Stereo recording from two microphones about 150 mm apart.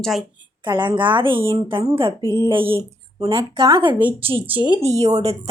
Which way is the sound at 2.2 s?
15° left (ahead or behind).